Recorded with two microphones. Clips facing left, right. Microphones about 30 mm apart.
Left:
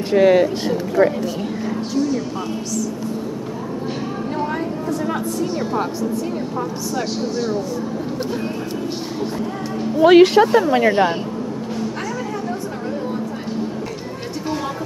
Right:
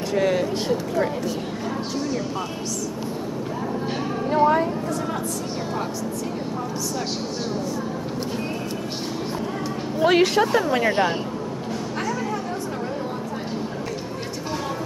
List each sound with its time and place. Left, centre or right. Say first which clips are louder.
0.1 s speech: left 9 dB; left
4.3 s speech: right 7 dB; centre
10.0 s speech: left 8 dB; centre
10.4 s speech: left 5 dB; centre